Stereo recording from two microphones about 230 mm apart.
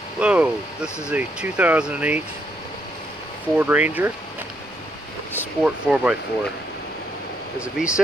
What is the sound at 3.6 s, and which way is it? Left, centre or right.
Speech, centre.